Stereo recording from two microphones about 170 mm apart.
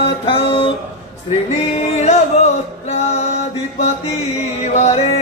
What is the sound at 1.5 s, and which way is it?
Music, 40° left (ahead or behind).